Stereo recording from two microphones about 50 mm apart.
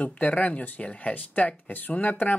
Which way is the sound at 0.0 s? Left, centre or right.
Left.